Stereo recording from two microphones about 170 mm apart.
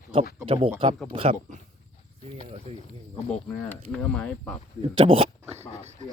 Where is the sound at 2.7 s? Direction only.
40° right (ahead or behind).